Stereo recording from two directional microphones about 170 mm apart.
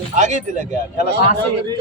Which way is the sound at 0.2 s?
45° right (ahead or behind).